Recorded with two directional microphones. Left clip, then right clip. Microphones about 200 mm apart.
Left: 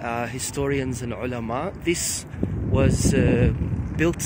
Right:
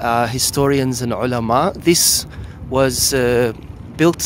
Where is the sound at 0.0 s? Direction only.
20° right (ahead or behind).